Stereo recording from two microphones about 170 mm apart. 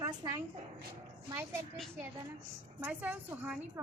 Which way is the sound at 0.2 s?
25° right (ahead or behind).